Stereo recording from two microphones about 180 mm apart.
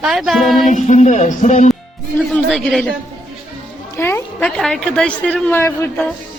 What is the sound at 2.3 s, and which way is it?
Speech, centre (ahead or behind).